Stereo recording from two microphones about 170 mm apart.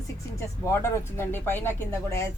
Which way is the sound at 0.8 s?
15° left (ahead or behind).